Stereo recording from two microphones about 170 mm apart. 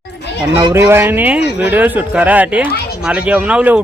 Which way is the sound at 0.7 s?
15° right (ahead or behind).